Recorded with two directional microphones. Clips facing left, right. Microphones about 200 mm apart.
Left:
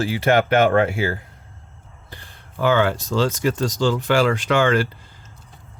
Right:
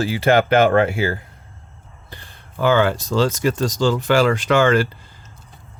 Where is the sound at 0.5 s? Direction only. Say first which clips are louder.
Right 2 dB; 30° right (ahead or behind).